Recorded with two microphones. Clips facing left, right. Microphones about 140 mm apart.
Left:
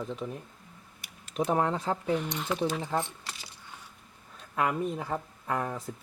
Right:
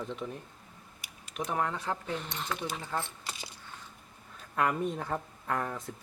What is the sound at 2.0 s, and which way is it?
Speech, 15° left (ahead or behind).